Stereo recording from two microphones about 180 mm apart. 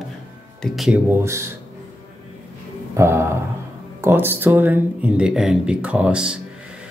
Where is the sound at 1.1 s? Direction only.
15° right (ahead or behind).